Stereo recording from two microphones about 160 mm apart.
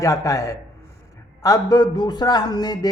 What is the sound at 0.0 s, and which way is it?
Speech, 20° left (ahead or behind).